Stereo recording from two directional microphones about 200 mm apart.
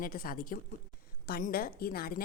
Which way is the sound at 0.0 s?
45° left (ahead or behind).